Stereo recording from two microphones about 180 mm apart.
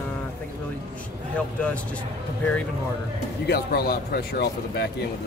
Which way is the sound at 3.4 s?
60° left (ahead or behind).